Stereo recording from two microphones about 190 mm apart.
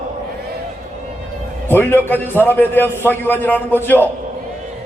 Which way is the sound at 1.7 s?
10° left (ahead or behind).